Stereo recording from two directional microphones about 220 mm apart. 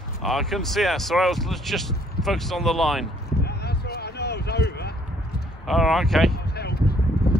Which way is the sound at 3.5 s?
45° left (ahead or behind).